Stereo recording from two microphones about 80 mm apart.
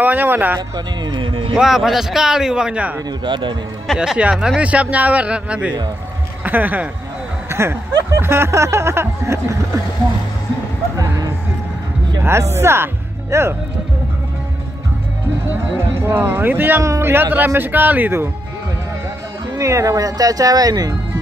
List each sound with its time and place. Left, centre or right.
0.0 s speech: right
0.6 s a man's voice: right
1.5 s a man's voice: centre
3.1 s a man's voice: right
4.0 s a man's voice: centre
7.4 s snicker: right
11.0 s music: right
12.2 s speech: right
16.0 s speech: right
16.8 s snicker: right
17.1 s speech: right
19.5 s speech: right